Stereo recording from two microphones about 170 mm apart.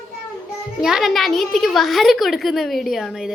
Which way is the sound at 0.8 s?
Centre (ahead or behind).